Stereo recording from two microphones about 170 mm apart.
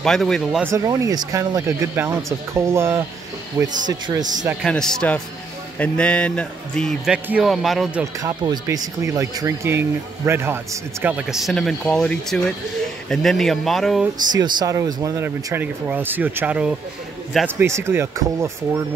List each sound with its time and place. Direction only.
0.0 s speech: 5° left (ahead or behind)
0.7 s speech: 20° right (ahead or behind)
4.6 s a man's voice: 5° left (ahead or behind)
8.2 s speech: 20° right (ahead or behind); by 14.0 s centre (ahead or behind)
14.3 s speech: 25° right (ahead or behind)